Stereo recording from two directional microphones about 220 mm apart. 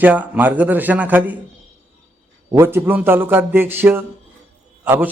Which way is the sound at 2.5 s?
10° right (ahead or behind).